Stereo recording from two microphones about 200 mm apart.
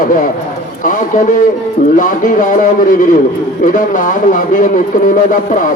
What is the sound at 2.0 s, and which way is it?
Speech, 40° left (ahead or behind).